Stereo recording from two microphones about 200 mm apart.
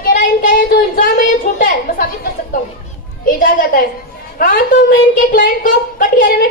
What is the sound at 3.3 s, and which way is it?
Speech, 45° left (ahead or behind).